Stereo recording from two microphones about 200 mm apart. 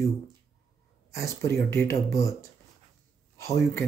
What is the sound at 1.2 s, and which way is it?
Speech, 15° left (ahead or behind).